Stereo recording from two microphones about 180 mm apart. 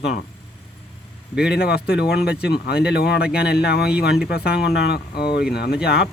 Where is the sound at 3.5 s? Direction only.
65° left (ahead or behind).